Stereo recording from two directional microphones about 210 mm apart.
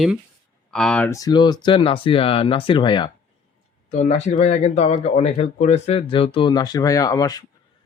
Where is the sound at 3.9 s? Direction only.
35° left (ahead or behind).